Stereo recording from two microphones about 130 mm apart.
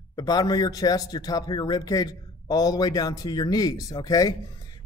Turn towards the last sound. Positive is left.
turn(degrees=30)  # may be behind; listen again after turning